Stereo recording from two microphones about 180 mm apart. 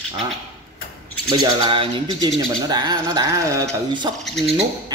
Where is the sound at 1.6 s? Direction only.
25° right (ahead or behind).